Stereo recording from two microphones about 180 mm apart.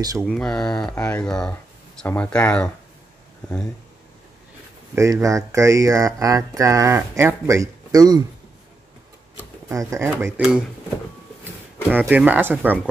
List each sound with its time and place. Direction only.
0.2 s speech: 5° left (ahead or behind)
4.9 s speech: 15° right (ahead or behind)
9.7 s speech: 15° right (ahead or behind)
11.9 s speech: 10° right (ahead or behind)